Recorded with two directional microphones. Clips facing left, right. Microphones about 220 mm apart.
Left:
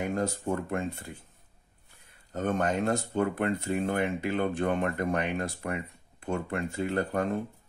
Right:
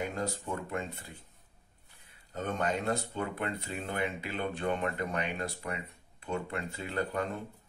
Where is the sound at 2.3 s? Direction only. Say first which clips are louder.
Left 5 dB; 50° left (ahead or behind).